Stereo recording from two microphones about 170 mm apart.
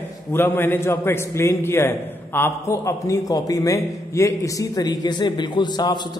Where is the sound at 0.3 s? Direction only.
15° left (ahead or behind).